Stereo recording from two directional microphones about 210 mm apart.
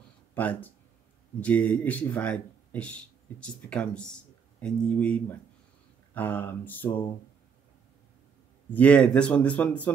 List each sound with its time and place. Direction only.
0.3 s speech: 5° left (ahead or behind)
8.7 s speech: 5° left (ahead or behind)